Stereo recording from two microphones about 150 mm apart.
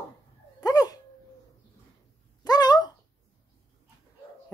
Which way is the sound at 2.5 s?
25° left (ahead or behind).